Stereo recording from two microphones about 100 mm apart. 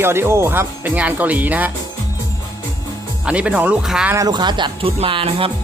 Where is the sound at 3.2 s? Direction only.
10° right (ahead or behind).